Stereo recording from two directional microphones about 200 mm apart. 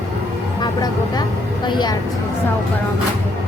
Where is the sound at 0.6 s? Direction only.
20° left (ahead or behind).